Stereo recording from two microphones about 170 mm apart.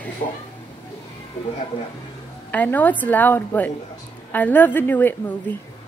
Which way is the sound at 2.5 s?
10° left (ahead or behind).